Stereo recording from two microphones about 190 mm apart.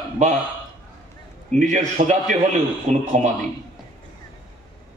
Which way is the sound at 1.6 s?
40° right (ahead or behind).